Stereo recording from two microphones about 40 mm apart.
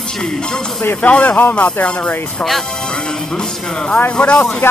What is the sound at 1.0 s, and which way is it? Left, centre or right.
Speech, left.